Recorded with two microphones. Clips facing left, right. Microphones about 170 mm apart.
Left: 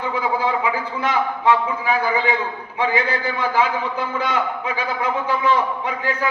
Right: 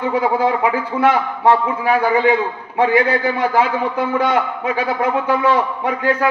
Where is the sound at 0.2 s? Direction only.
55° right (ahead or behind).